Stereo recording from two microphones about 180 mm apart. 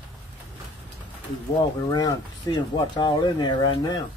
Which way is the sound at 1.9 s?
25° left (ahead or behind).